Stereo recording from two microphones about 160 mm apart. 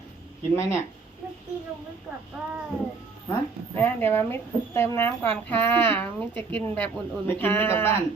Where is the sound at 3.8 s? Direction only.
15° left (ahead or behind).